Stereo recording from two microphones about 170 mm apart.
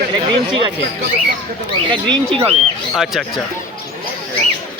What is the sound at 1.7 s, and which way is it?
Speech, 30° right (ahead or behind).